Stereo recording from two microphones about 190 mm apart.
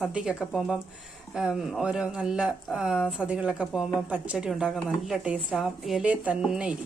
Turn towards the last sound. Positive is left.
turn(degrees=-5)  # may be behind; listen again after turning